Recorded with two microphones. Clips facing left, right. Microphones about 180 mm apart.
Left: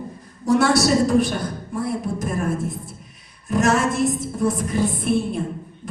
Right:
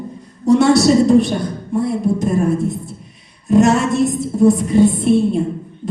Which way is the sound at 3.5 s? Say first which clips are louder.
Right 6 dB; centre (ahead or behind).